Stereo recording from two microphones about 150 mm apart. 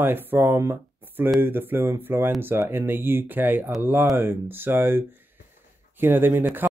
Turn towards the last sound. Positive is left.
turn(degrees=-15)  # may be behind; listen again after turning